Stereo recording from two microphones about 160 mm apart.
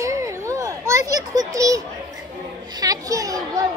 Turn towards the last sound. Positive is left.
turn(degrees=-20)  # may be behind; listen again after turning